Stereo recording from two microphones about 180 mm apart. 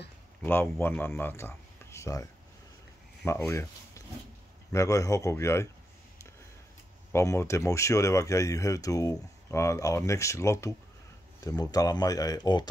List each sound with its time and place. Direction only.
0.4 s speech: 10° left (ahead or behind)
3.3 s speech: 15° left (ahead or behind)
7.1 s speech: 15° left (ahead or behind)